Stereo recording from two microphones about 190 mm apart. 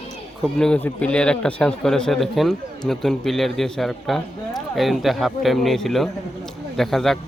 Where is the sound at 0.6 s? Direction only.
5° left (ahead or behind).